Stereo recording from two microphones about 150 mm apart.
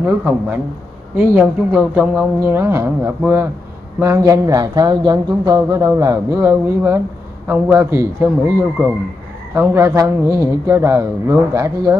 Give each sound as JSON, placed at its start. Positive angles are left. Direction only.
{"t": 0.0, "sound": "speech", "side_deg": -10}